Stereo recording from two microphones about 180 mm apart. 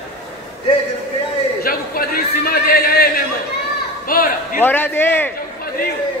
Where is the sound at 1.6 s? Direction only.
55° left (ahead or behind).